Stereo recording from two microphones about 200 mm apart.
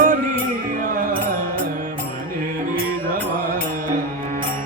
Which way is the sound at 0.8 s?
45° right (ahead or behind).